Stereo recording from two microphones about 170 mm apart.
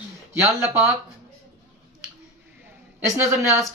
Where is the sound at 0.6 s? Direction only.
15° right (ahead or behind).